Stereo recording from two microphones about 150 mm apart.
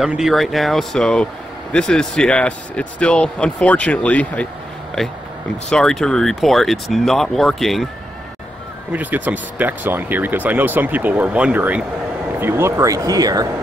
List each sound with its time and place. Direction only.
0.0 s speech: 5° right (ahead or behind)
8.9 s speech: 10° right (ahead or behind)